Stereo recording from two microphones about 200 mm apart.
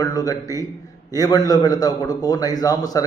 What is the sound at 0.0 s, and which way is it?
A man's voice, 15° left (ahead or behind).